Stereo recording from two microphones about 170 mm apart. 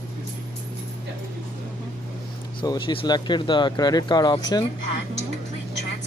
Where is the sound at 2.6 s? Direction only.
30° left (ahead or behind).